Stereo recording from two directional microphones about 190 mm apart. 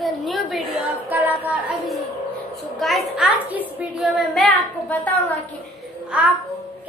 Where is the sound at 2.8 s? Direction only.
Centre (ahead or behind).